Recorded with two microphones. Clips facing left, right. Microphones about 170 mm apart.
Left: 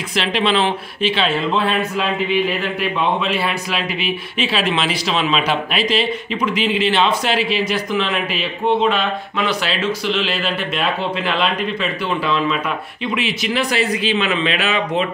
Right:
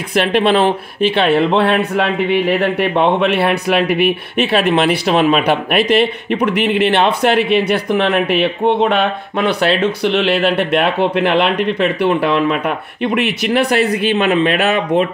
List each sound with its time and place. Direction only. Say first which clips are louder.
0.1 s speech: right 6 dB; 55° right (ahead or behind)